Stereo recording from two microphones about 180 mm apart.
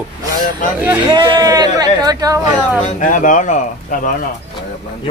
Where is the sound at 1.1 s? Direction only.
25° right (ahead or behind).